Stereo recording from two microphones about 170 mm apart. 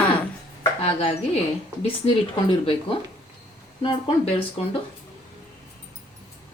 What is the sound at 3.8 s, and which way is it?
Speech, 35° left (ahead or behind).